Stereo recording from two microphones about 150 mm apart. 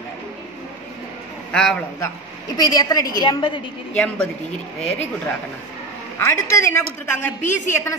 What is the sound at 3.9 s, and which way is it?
Speech, 5° left (ahead or behind).